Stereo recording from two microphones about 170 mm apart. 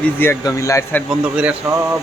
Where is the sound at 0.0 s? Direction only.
15° left (ahead or behind).